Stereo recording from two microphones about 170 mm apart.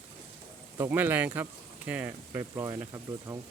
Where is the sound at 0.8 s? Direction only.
10° right (ahead or behind).